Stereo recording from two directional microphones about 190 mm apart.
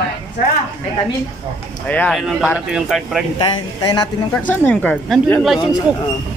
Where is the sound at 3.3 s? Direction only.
20° left (ahead or behind).